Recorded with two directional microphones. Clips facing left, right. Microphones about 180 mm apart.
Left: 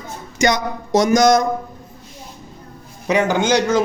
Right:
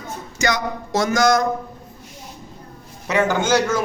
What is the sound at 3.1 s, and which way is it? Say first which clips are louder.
Speech: left 2 dB; 15° left (ahead or behind).